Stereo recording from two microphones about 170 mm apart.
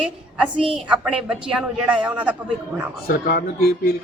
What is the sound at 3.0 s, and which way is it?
Speech, 60° left (ahead or behind).